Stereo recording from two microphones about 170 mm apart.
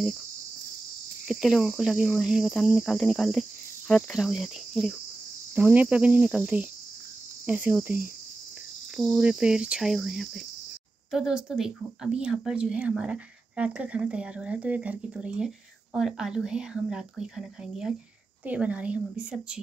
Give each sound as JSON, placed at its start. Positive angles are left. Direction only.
{"t": 1.2, "sound": "speech", "side_deg": 0}
{"t": 5.5, "sound": "cricket", "side_deg": -10}
{"t": 8.9, "sound": "speech", "side_deg": 0}
{"t": 18.4, "sound": "cricket", "side_deg": -10}